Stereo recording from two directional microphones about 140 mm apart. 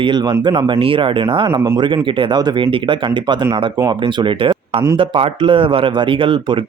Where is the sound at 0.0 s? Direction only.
35° right (ahead or behind).